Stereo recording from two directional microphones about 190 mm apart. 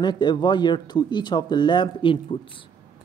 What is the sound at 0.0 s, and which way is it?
A woman's voice, 25° left (ahead or behind).